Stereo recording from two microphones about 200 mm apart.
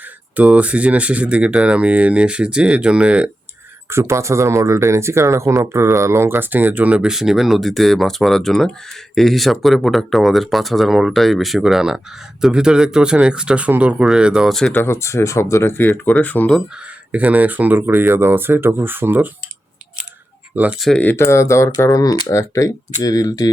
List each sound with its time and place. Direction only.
0.3 s speech: 5° right (ahead or behind)
17.1 s speech: 5° right (ahead or behind)
20.6 s speech: 5° right (ahead or behind); by 23.5 s 20° left (ahead or behind)